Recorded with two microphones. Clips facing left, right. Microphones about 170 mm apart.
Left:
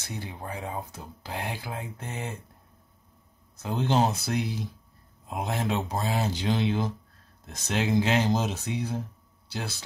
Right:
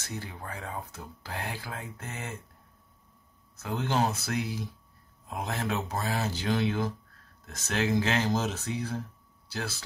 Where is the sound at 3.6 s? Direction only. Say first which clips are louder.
Left 3 dB; 20° left (ahead or behind).